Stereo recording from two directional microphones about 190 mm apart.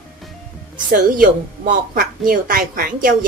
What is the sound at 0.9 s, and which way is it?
A woman's voice, 45° right (ahead or behind).